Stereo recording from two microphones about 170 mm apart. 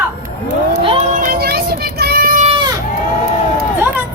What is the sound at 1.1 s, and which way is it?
Child singing, 55° right (ahead or behind).